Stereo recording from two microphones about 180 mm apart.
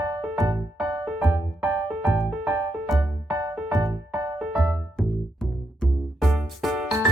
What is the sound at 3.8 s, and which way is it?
Music, 20° right (ahead or behind).